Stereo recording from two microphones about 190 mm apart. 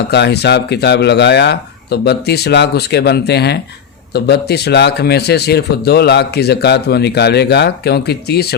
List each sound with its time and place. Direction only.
0.1 s a man's voice: 60° left (ahead or behind)